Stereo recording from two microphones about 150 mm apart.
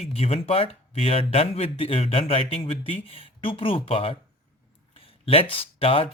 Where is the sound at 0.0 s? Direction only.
40° left (ahead or behind).